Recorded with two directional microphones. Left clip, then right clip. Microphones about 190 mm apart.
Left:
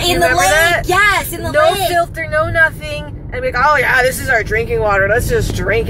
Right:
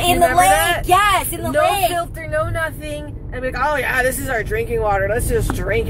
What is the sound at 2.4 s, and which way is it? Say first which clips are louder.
Speech: left 9 dB; 10° left (ahead or behind).